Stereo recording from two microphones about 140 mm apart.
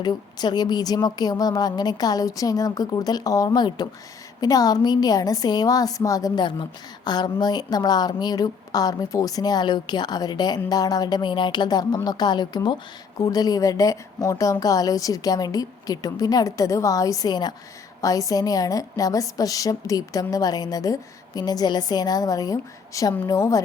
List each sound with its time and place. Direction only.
0.0 s a woman's voice: 30° left (ahead or behind)